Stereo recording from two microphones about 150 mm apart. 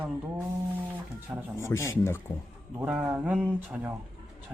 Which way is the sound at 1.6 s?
20° left (ahead or behind).